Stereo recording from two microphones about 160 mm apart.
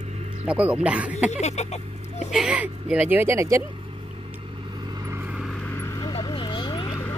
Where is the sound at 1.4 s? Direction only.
45° left (ahead or behind).